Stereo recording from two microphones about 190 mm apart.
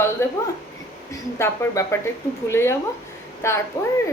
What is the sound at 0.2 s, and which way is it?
A woman's voice, 15° left (ahead or behind).